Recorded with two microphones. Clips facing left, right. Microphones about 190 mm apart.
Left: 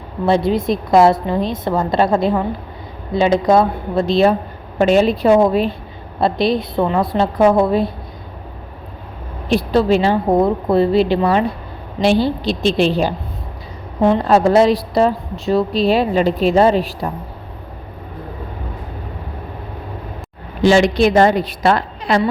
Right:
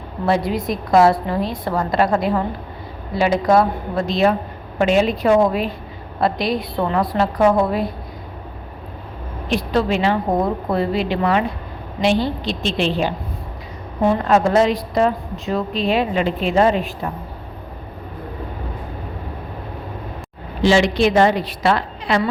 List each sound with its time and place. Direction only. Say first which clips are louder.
0.3 s a woman's voice: left 4 dB; 25° left (ahead or behind)
9.5 s a woman's voice: left 5 dB; 35° left (ahead or behind)
14.2 s a woman's voice: left 3 dB; 35° left (ahead or behind)
20.6 s a woman's voice: left 3 dB; 45° left (ahead or behind)